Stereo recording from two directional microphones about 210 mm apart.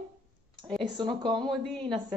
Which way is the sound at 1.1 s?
Centre (ahead or behind).